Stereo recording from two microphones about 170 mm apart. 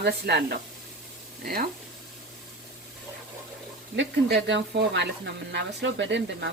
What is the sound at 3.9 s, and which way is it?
Speech, 90° right.